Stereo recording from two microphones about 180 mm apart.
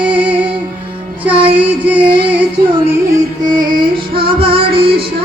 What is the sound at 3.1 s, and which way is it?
Music, 25° right (ahead or behind).